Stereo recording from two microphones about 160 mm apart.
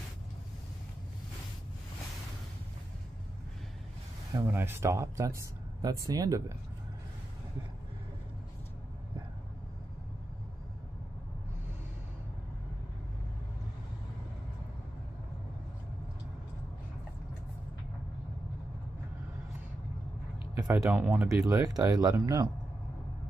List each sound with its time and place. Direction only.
4.3 s speech: 15° right (ahead or behind)
20.5 s a sound: 10° right (ahead or behind)
20.8 s speech: 15° right (ahead or behind)